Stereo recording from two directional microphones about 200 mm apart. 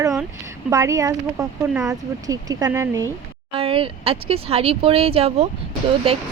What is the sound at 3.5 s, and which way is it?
Speech, 25° right (ahead or behind).